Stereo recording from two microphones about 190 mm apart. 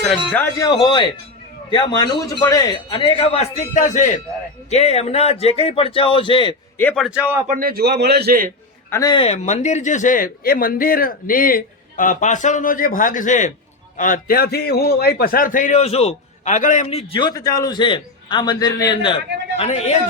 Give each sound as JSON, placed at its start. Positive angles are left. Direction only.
{"t": 0.3, "sound": "a man's voice", "side_deg": 15}
{"t": 6.7, "sound": "a man's voice", "side_deg": 5}
{"t": 7.4, "sound": "a man's voice", "side_deg": -45}
{"t": 8.9, "sound": "a man's voice", "side_deg": 20}
{"t": 9.2, "sound": "a man's voice", "side_deg": 35}